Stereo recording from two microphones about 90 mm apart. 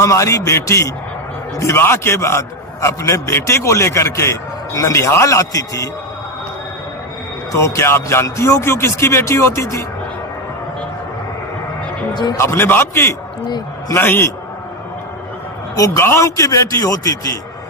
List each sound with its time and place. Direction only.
0.0 s a man's voice: 35° left (ahead or behind)
7.5 s a man's voice: 30° left (ahead or behind)
12.4 s a man's voice: 30° left (ahead or behind)
16.0 s a man's voice: 30° left (ahead or behind)